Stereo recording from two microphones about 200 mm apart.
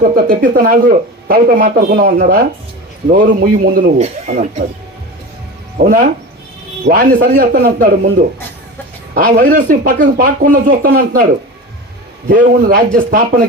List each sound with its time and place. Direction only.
0.3 s a man's voice: 45° right (ahead or behind)
4.0 s speech: 35° right (ahead or behind)
5.8 s a man's voice: 45° right (ahead or behind)
9.1 s a man's voice: 45° right (ahead or behind)
12.3 s a man's voice: 45° right (ahead or behind)